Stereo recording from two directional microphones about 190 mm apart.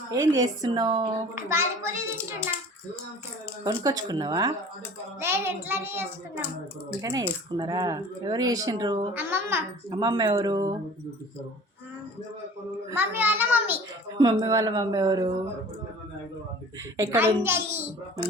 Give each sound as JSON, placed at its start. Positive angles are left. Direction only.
{"t": 0.1, "sound": "speech", "side_deg": -20}
{"t": 3.6, "sound": "a child's voice", "side_deg": -15}
{"t": 9.1, "sound": "speech", "side_deg": -10}
{"t": 12.9, "sound": "a child's voice", "side_deg": -10}
{"t": 17.0, "sound": "a child's voice", "side_deg": -15}